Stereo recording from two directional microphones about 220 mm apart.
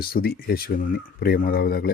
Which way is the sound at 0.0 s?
45° left (ahead or behind).